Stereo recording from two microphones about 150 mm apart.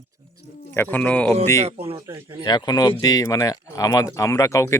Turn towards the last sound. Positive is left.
turn(degrees=20)  # may be behind; listen again after turning